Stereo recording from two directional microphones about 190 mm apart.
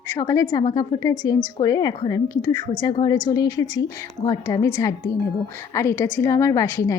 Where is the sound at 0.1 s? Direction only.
20° left (ahead or behind).